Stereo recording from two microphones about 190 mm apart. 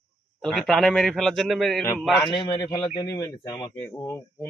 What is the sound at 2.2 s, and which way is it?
Speech, 20° left (ahead or behind).